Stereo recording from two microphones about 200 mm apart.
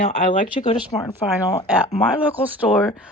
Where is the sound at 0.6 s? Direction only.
35° left (ahead or behind).